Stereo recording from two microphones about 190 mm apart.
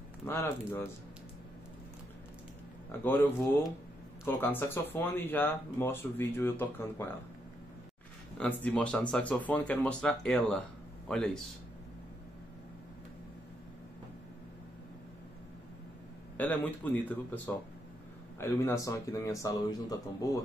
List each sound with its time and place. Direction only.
0.3 s speech: 15° left (ahead or behind)
4.3 s speech: 10° left (ahead or behind)
8.4 s speech: 10° left (ahead or behind)
16.3 s speech: 10° left (ahead or behind)